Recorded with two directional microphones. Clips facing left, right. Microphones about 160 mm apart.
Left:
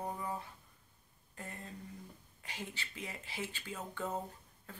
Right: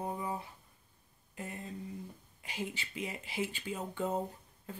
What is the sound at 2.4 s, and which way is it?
Speech, 10° right (ahead or behind).